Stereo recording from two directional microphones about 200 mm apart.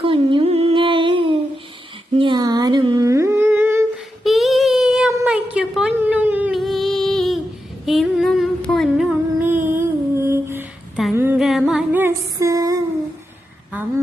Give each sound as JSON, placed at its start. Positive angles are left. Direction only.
{"t": 0.0, "sound": "humming", "side_deg": -25}
{"t": 4.2, "sound": "child singing", "side_deg": 0}
{"t": 5.2, "sound": "a sound", "side_deg": -5}
{"t": 7.9, "sound": "music", "side_deg": 0}
{"t": 11.1, "sound": "female singing", "side_deg": -10}